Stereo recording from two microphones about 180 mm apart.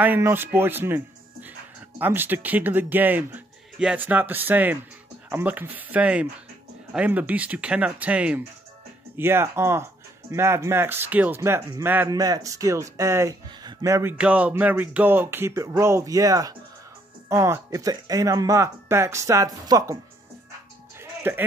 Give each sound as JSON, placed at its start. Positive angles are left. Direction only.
{"t": 0.0, "sound": "speech", "side_deg": -10}
{"t": 21.0, "sound": "music", "side_deg": -10}